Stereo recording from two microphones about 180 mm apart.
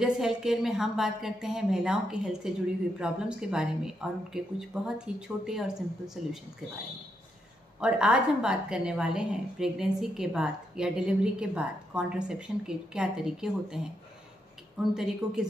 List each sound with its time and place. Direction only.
0.0 s a woman's voice: 5° right (ahead or behind)
7.8 s a woman's voice: 5° right (ahead or behind)
14.8 s a woman's voice: 5° right (ahead or behind)